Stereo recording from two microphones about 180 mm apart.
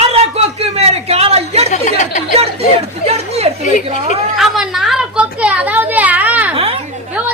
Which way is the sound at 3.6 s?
45° left (ahead or behind).